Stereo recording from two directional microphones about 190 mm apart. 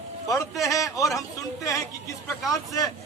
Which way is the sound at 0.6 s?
15° left (ahead or behind).